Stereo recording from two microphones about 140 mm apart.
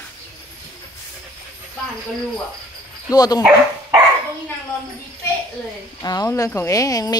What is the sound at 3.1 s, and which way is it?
Speech, 30° left (ahead or behind).